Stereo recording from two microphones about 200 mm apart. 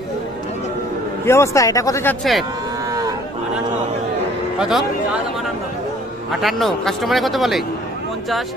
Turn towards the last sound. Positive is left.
turn(degrees=0)  # may be behind; listen again after turning